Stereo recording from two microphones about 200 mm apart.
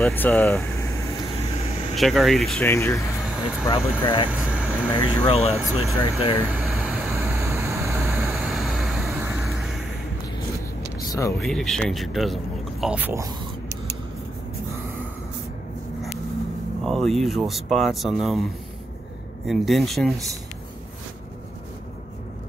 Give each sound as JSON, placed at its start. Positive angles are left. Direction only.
{"t": 0.0, "sound": "speech", "side_deg": 10}
{"t": 1.6, "sound": "vehicle", "side_deg": 30}
{"t": 2.0, "sound": "speech", "side_deg": 0}
{"t": 4.3, "sound": "air conditioning", "side_deg": -5}
{"t": 4.9, "sound": "speech", "side_deg": 25}
{"t": 6.5, "sound": "vehicle", "side_deg": 0}
{"t": 11.0, "sound": "a sound", "side_deg": 15}
{"t": 11.3, "sound": "speech", "side_deg": 5}
{"t": 16.8, "sound": "speech", "side_deg": 0}
{"t": 19.4, "sound": "speech", "side_deg": 0}